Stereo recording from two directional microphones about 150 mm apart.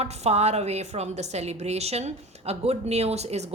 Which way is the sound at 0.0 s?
45° right (ahead or behind).